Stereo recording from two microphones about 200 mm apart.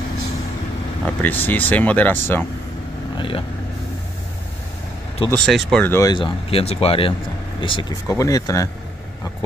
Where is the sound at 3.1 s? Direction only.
25° left (ahead or behind).